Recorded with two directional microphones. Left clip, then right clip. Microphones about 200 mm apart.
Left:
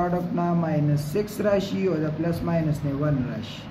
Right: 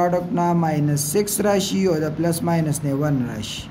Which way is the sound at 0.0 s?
60° right (ahead or behind).